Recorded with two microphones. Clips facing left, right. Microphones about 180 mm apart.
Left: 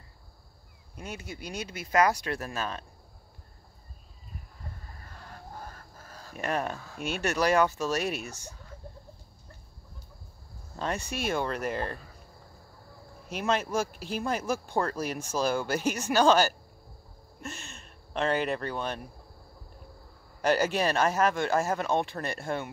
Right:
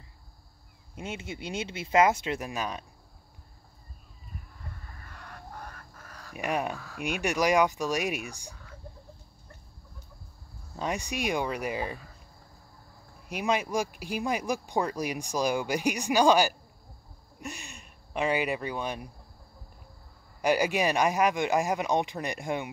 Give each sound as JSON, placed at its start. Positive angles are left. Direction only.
{"t": 0.9, "sound": "speech", "side_deg": -25}
{"t": 6.0, "sound": "a sound", "side_deg": 30}
{"t": 6.3, "sound": "speech", "side_deg": -10}
{"t": 10.8, "sound": "speech", "side_deg": -15}
{"t": 13.3, "sound": "speech", "side_deg": -10}
{"t": 20.4, "sound": "speech", "side_deg": -10}